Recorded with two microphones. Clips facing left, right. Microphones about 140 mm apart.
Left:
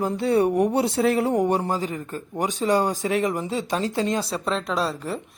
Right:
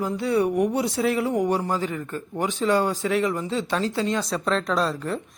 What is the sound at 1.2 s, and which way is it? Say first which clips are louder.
Music: left 2 dB; 30° left (ahead or behind).